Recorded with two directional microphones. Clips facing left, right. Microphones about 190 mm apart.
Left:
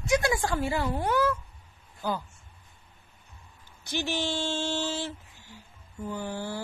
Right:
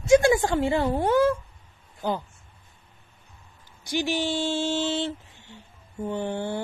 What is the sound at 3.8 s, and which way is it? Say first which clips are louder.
Speech: right 4 dB; 10° right (ahead or behind).